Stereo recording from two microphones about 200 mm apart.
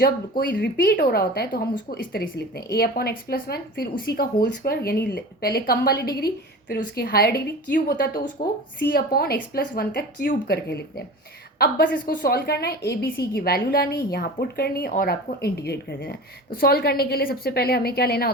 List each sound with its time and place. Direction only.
0.0 s speech: 55° left (ahead or behind)